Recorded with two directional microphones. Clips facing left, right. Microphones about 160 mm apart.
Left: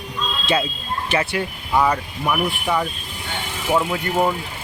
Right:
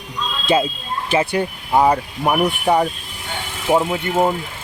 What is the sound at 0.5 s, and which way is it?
Speech, 25° right (ahead or behind).